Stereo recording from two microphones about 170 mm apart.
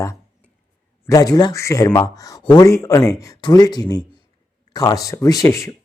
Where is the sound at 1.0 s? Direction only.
20° left (ahead or behind).